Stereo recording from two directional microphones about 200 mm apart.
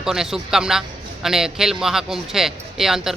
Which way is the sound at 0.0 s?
Centre (ahead or behind).